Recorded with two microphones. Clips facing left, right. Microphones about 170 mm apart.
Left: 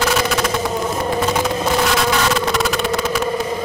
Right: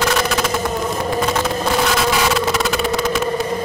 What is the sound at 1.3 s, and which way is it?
Vehicle, centre (ahead or behind).